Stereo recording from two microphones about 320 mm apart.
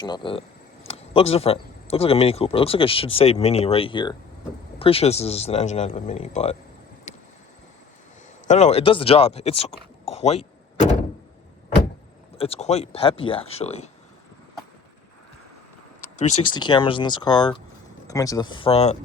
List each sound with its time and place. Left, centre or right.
0.0 s speech: centre
7.1 s vehicle: left
8.4 s speech: left
12.4 s speech: centre
16.5 s speech: centre